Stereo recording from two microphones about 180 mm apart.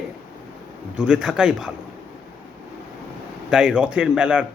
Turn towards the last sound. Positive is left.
turn(degrees=-5)  # may be behind; listen again after turning